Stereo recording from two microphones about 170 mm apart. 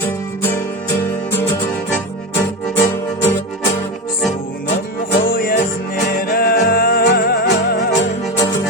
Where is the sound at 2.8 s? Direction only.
15° left (ahead or behind).